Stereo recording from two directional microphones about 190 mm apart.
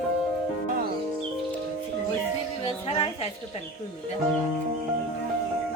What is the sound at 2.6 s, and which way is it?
Music, 30° left (ahead or behind).